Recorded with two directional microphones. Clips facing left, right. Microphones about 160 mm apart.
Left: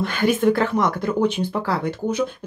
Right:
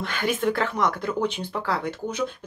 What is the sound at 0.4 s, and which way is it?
Speech, 30° left (ahead or behind).